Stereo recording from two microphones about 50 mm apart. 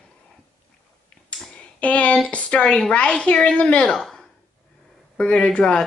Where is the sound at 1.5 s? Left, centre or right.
Left.